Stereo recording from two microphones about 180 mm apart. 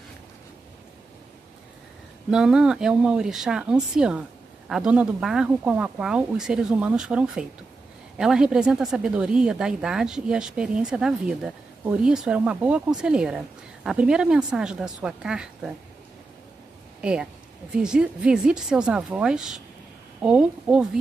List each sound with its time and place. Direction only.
2.3 s speech: 5° right (ahead or behind)
17.0 s speech: 5° right (ahead or behind)